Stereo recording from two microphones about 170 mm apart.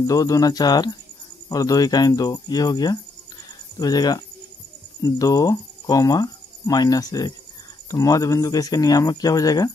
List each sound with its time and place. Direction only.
0.0 s speech: 20° left (ahead or behind)